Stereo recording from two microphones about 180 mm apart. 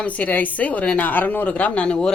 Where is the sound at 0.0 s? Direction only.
5° left (ahead or behind).